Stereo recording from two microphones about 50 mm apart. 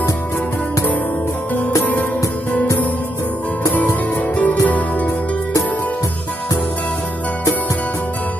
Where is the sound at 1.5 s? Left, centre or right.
Left.